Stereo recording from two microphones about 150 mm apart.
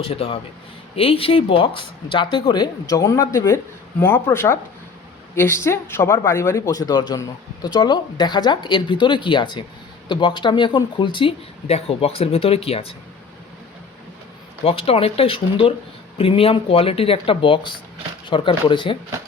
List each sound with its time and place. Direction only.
0.0 s speech: 40° left (ahead or behind)
14.6 s speech: 40° left (ahead or behind)